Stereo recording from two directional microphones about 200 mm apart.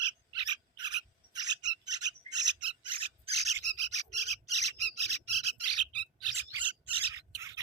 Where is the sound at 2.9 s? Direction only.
25° right (ahead or behind).